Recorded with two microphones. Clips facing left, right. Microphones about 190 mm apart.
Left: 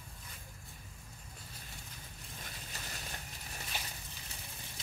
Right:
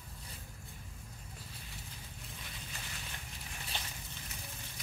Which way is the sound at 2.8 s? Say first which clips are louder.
Left 2 dB; 40° left (ahead or behind).